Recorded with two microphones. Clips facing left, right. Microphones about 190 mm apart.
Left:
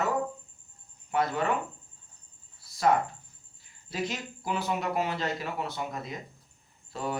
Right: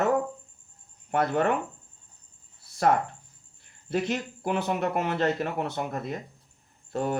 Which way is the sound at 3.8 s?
60° right (ahead or behind).